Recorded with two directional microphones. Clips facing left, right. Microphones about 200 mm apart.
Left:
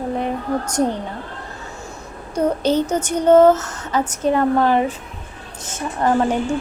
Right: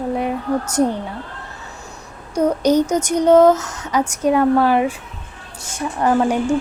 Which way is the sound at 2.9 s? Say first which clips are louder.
Right 1 dB; 10° right (ahead or behind).